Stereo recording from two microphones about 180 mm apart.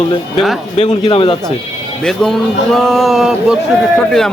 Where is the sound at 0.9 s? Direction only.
30° left (ahead or behind).